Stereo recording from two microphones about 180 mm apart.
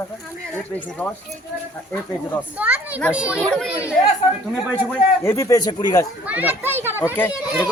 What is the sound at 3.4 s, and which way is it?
Speech, 5° left (ahead or behind).